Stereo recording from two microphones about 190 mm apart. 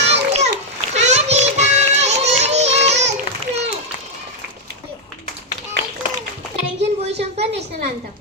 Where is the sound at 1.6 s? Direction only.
35° right (ahead or behind).